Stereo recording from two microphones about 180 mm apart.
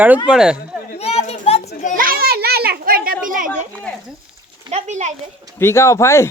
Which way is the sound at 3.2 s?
50° right (ahead or behind).